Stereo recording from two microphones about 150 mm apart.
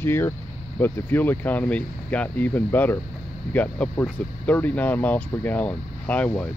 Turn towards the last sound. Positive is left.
turn(degrees=10)  # may be behind; listen again after turning